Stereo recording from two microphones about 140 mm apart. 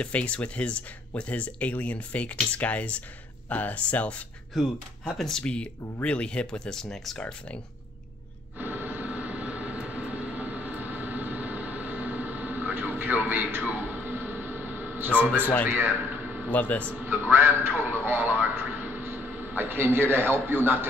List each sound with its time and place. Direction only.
0.0 s speech: 10° left (ahead or behind)
8.5 s vehicle: 15° right (ahead or behind)
15.4 s speech: 10° left (ahead or behind)
15.7 s a sound: 15° right (ahead or behind)
16.4 s speech: 10° left (ahead or behind)
17.0 s a man's voice: 15° right (ahead or behind)